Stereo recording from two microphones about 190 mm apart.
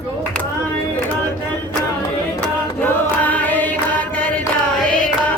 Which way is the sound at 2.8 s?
10° left (ahead or behind).